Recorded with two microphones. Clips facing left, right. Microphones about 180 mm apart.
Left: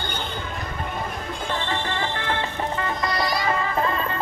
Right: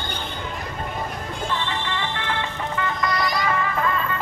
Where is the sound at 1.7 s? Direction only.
35° left (ahead or behind).